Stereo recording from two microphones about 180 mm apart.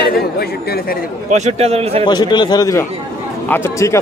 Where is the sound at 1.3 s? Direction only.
35° right (ahead or behind).